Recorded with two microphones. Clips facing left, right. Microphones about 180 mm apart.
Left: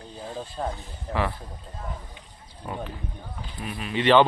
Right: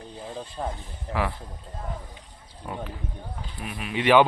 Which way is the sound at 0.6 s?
Centre (ahead or behind).